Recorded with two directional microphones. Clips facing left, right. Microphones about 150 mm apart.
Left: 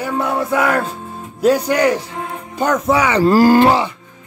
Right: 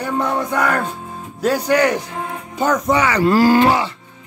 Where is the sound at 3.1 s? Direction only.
40° left (ahead or behind).